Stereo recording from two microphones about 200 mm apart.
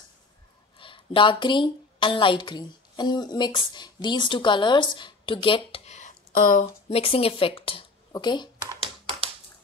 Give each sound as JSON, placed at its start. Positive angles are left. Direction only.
{"t": 0.7, "sound": "speech", "side_deg": 25}
{"t": 6.6, "sound": "speech", "side_deg": 30}
{"t": 8.5, "sound": "computer keyboard", "side_deg": -20}